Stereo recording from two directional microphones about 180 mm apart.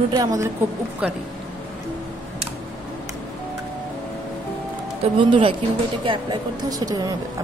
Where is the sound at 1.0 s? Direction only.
5° right (ahead or behind).